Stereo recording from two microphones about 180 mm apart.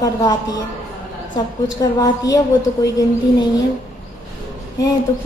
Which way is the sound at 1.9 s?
20° left (ahead or behind).